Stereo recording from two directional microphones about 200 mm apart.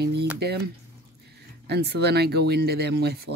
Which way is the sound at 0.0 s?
55° right (ahead or behind).